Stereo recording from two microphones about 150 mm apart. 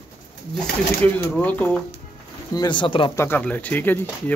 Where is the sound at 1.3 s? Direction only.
10° left (ahead or behind).